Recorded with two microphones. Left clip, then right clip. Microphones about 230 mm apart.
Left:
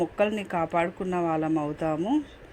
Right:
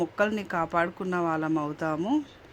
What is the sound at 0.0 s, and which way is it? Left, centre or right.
Speech, centre.